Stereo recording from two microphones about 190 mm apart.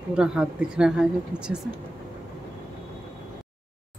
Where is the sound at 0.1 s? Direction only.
5° right (ahead or behind).